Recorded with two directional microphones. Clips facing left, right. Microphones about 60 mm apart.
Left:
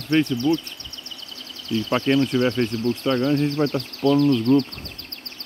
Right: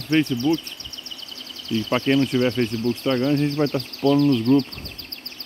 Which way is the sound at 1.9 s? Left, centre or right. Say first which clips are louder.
Even; centre.